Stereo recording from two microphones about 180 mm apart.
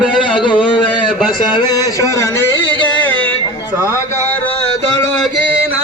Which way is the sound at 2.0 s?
15° left (ahead or behind).